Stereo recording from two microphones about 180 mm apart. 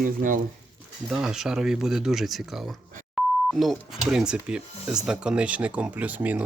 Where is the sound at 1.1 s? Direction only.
5° right (ahead or behind).